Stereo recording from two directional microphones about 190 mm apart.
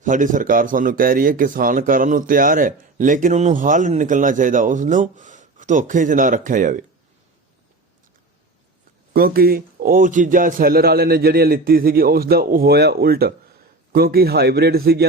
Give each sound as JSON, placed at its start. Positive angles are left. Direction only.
{"t": 0.0, "sound": "speech", "side_deg": -45}
{"t": 9.1, "sound": "a man's voice", "side_deg": -50}